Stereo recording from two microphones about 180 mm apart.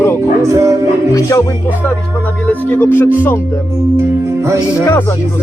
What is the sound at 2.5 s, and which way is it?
Speech, 10° left (ahead or behind).